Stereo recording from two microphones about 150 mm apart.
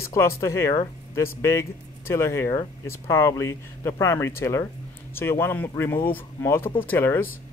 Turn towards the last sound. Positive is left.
turn(degrees=15)  # may be behind; listen again after turning